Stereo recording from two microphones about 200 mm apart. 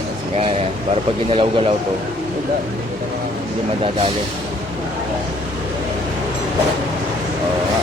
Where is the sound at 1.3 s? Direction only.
25° right (ahead or behind).